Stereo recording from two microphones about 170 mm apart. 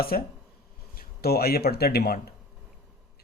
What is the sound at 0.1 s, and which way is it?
Speech, 55° left (ahead or behind).